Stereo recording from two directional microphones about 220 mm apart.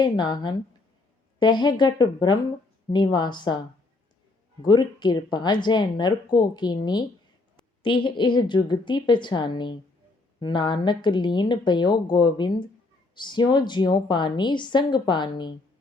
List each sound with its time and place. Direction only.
0.0 s speech: 20° left (ahead or behind)
4.6 s speech: 20° left (ahead or behind)